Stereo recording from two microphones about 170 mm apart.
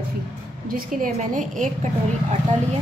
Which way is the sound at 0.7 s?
50° right (ahead or behind).